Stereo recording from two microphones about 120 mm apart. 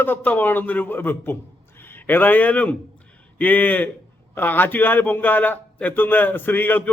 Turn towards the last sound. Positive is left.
turn(degrees=15)  # may be behind; listen again after turning